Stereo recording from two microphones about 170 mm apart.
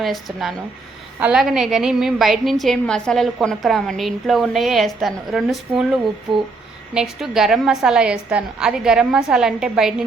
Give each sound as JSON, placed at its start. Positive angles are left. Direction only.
{"t": 0.0, "sound": "a woman's voice", "side_deg": 0}